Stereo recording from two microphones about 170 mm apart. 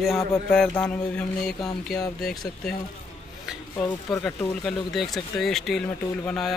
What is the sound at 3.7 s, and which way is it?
Speech, 15° left (ahead or behind).